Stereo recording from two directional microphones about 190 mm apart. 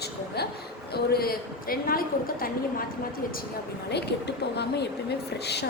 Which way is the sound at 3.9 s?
60° left (ahead or behind).